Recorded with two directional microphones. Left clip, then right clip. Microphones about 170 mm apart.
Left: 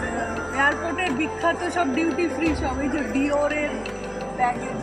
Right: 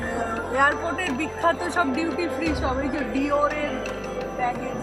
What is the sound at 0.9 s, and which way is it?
Speech, 20° right (ahead or behind).